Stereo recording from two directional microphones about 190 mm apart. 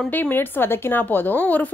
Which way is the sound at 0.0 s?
10° left (ahead or behind).